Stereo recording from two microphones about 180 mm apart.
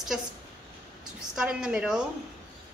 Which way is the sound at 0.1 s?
5° right (ahead or behind).